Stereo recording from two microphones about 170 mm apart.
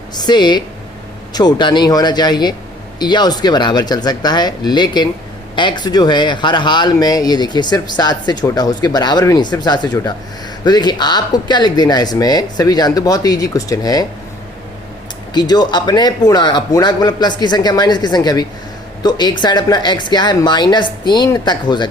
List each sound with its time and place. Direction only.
0.2 s speech: 25° left (ahead or behind)
15.3 s speech: 25° left (ahead or behind)